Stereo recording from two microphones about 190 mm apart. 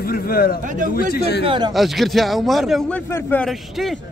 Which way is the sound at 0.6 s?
45° right (ahead or behind).